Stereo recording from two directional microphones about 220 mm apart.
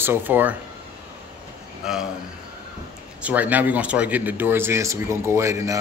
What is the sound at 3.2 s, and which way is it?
Speech, 5° right (ahead or behind).